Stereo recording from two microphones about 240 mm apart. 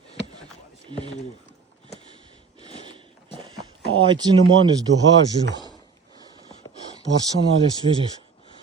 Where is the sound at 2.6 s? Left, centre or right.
Centre.